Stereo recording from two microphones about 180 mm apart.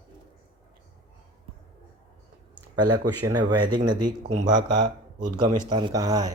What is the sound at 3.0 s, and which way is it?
Speech, 25° right (ahead or behind).